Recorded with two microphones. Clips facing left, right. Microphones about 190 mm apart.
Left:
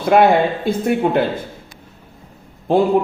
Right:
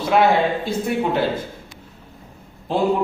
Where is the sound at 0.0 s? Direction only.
55° left (ahead or behind).